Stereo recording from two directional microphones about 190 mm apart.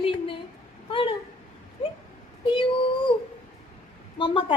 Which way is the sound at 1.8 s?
25° left (ahead or behind).